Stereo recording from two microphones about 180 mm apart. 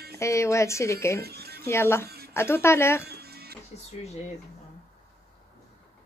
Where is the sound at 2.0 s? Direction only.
60° right (ahead or behind).